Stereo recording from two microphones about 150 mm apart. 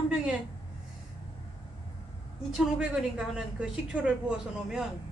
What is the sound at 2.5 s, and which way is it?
A woman's voice, 5° right (ahead or behind).